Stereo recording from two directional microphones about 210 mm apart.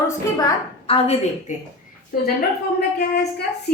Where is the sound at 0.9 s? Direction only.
25° left (ahead or behind).